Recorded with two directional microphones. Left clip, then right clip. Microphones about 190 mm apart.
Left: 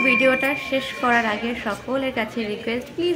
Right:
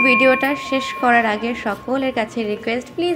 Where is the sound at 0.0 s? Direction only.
25° right (ahead or behind).